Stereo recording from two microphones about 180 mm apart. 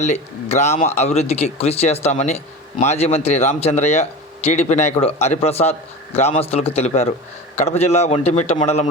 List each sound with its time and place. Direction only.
0.0 s a man's voice: 40° left (ahead or behind)